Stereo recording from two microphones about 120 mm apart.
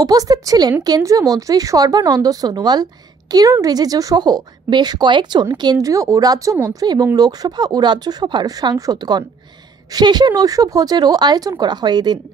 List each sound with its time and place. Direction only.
0.0 s a woman's voice: 30° right (ahead or behind)